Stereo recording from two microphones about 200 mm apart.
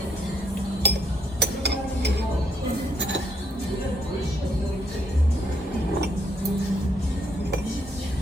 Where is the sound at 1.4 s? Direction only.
55° right (ahead or behind).